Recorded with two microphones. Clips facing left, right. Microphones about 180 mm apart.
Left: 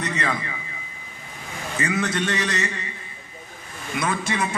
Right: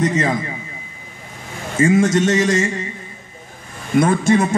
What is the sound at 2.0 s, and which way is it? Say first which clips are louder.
Speech: right 10 dB; 45° right (ahead or behind).